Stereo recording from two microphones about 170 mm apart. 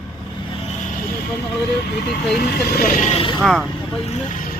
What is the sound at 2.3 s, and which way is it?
Speech, 60° left (ahead or behind).